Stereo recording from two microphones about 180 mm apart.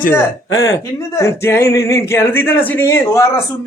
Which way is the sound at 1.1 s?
15° left (ahead or behind).